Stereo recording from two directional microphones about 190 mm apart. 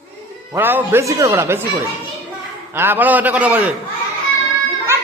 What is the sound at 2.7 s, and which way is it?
A man's voice, 10° right (ahead or behind).